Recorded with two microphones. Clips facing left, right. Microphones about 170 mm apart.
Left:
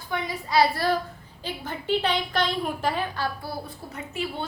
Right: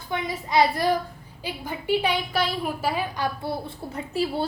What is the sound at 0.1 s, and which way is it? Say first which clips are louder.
A woman's voice: right 1 dB; 20° right (ahead or behind).